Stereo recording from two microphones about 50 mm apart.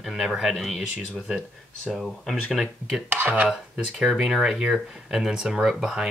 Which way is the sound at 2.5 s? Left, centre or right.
Centre.